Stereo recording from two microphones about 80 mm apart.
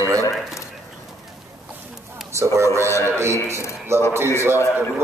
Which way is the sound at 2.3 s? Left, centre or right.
Right.